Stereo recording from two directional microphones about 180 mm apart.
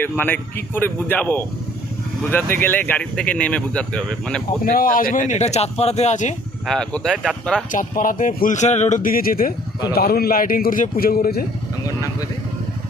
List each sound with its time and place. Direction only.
0.0 s speech: 10° left (ahead or behind)
4.6 s speech: 50° left (ahead or behind)
6.7 s speech: 5° left (ahead or behind)
7.7 s a man's voice: 50° left (ahead or behind)